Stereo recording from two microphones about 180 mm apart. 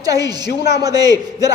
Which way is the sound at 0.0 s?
20° right (ahead or behind).